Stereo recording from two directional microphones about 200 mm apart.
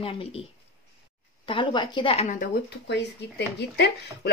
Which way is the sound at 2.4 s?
55° left (ahead or behind).